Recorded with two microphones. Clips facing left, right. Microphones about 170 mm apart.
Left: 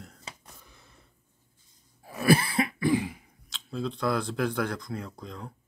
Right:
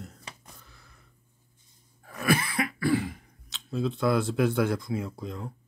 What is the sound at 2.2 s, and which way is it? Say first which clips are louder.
Throat clearing: left 3 dB; 30° left (ahead or behind).